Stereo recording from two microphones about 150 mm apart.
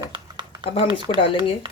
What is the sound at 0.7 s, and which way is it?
Speech, 35° left (ahead or behind).